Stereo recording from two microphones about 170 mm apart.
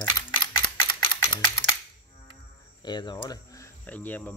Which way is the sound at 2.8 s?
25° left (ahead or behind).